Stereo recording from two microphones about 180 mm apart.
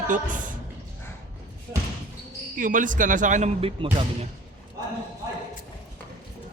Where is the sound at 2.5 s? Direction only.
45° right (ahead or behind).